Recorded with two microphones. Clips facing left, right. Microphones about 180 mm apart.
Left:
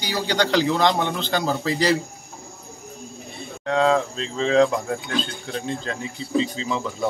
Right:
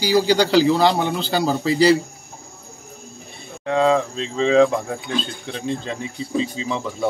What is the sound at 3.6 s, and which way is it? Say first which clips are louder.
A man's voice: right 2 dB; 10° right (ahead or behind).